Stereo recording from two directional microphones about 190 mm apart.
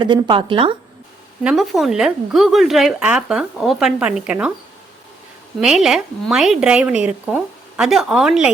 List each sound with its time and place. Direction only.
0.0 s a woman's voice: 25° right (ahead or behind)
1.5 s speech: centre (ahead or behind)
5.5 s speech: 5° right (ahead or behind)